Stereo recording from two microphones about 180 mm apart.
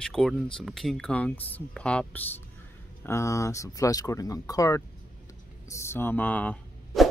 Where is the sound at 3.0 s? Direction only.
15° left (ahead or behind).